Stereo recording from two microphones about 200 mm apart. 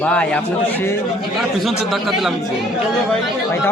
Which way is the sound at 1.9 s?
Centre (ahead or behind).